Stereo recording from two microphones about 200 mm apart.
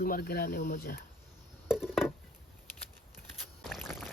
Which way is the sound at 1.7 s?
5° right (ahead or behind).